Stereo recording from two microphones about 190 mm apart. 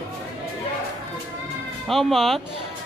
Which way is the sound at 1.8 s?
Centre (ahead or behind).